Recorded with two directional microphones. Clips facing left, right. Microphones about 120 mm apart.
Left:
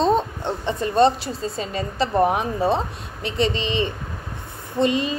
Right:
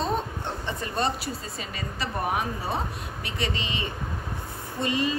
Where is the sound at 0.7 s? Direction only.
25° left (ahead or behind).